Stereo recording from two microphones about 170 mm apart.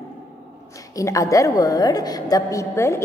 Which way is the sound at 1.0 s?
20° left (ahead or behind).